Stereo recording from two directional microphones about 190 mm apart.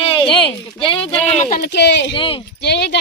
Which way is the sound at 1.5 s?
60° left (ahead or behind).